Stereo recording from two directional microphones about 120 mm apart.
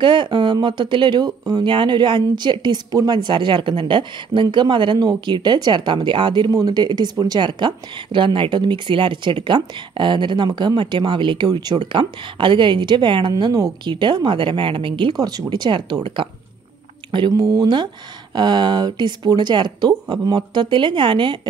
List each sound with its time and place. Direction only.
0.0 s speech: 40° right (ahead or behind)